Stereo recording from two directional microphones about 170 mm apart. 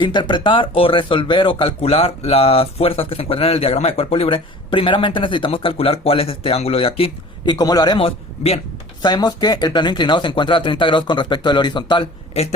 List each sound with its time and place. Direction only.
0.0 s speech: 25° left (ahead or behind)